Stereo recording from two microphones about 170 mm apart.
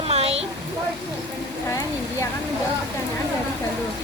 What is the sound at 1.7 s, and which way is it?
Speech, 20° left (ahead or behind).